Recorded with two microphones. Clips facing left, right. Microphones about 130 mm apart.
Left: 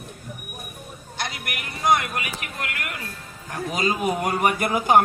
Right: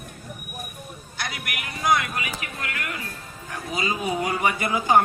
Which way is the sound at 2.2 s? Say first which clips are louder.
Left 1 dB; 60° left (ahead or behind).